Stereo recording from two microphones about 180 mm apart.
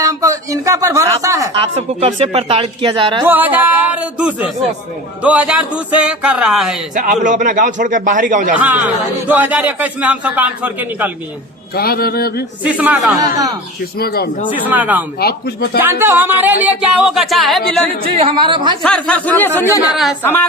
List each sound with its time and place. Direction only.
0.0 s speech: 20° right (ahead or behind)
1.5 s speech: 35° right (ahead or behind)
3.2 s a man's voice: 10° right (ahead or behind)
6.9 s speech: 45° right (ahead or behind)
8.5 s a man's voice: 10° right (ahead or behind)
11.7 s a sound: 60° left (ahead or behind)
12.6 s a man's voice: 10° right (ahead or behind)
13.1 s a woman's voice: 20° right (ahead or behind)
14.0 s a sound: 60° left (ahead or behind)
14.5 s a man's voice: 10° right (ahead or behind)
15.2 s a sound: 60° left (ahead or behind)
15.8 s a man's voice: 10° right (ahead or behind)
18.2 s a woman's voice: 30° right (ahead or behind)
18.8 s speech: 5° left (ahead or behind)